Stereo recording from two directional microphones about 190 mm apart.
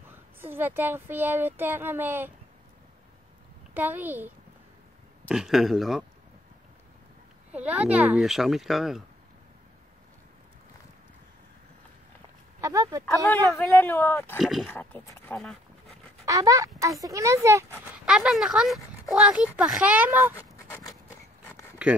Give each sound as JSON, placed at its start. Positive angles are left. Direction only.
{"t": 0.4, "sound": "speech", "side_deg": -10}
{"t": 3.7, "sound": "speech", "side_deg": -10}
{"t": 5.3, "sound": "speech", "side_deg": 0}
{"t": 7.5, "sound": "speech", "side_deg": -5}
{"t": 12.5, "sound": "speech", "side_deg": -15}
{"t": 13.0, "sound": "speech", "side_deg": 10}
{"t": 14.4, "sound": "speech", "side_deg": 0}
{"t": 16.3, "sound": "speech", "side_deg": -15}
{"t": 17.7, "sound": "speech", "side_deg": -5}
{"t": 20.3, "sound": "a sound", "side_deg": 15}
{"t": 21.8, "sound": "speech", "side_deg": -5}